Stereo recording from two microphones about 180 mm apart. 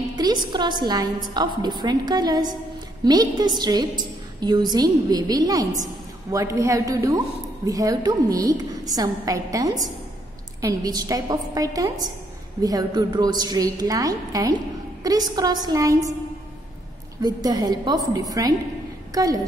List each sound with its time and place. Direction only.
0.1 s a woman's voice: 25° right (ahead or behind)
17.2 s a woman's voice: 20° right (ahead or behind)